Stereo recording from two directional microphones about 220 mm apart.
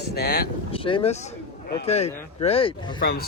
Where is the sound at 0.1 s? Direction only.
45° left (ahead or behind).